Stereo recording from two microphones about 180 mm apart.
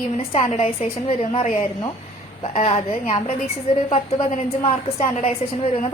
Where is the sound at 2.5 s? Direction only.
35° left (ahead or behind).